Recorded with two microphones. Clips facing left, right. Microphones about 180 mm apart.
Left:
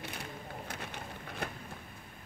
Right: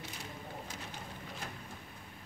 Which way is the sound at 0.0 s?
60° left (ahead or behind).